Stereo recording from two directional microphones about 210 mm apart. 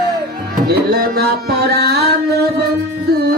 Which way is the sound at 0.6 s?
50° right (ahead or behind).